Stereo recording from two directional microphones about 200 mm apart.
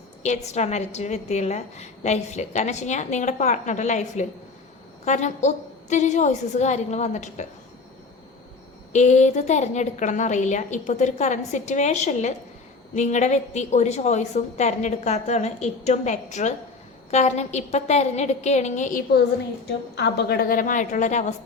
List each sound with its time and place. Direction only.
0.2 s a woman's voice: 35° left (ahead or behind)
8.9 s a woman's voice: 35° left (ahead or behind)
19.6 s a woman's voice: 55° left (ahead or behind); by 21.3 s 35° left (ahead or behind)